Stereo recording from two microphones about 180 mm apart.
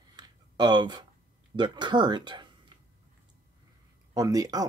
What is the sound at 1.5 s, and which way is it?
Speech, 25° right (ahead or behind).